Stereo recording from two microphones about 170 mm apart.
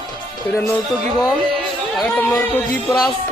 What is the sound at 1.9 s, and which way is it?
Speech, 5° left (ahead or behind).